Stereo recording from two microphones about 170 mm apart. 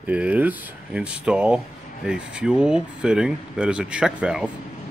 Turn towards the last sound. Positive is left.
turn(degrees=-5)  # may be behind; listen again after turning